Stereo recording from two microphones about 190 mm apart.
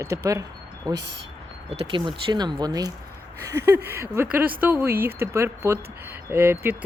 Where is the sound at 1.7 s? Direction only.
30° right (ahead or behind).